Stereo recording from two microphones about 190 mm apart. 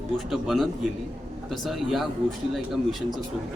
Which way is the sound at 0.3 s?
Centre (ahead or behind).